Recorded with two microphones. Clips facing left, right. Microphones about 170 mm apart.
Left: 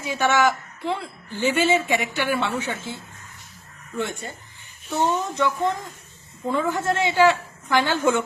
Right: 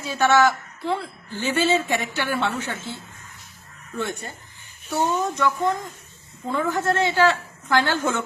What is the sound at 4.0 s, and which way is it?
A woman's voice, 20° left (ahead or behind).